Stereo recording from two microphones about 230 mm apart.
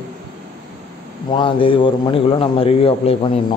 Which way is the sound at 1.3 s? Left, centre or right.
Left.